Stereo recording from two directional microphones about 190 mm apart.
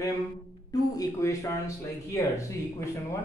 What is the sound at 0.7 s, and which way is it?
Speech, 20° left (ahead or behind).